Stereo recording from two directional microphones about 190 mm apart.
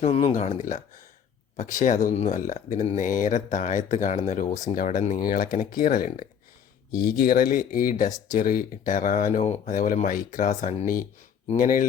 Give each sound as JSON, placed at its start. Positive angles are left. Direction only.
{"t": 0.0, "sound": "speech", "side_deg": 30}
{"t": 4.4, "sound": "speech", "side_deg": 20}
{"t": 4.7, "sound": "speech", "side_deg": 45}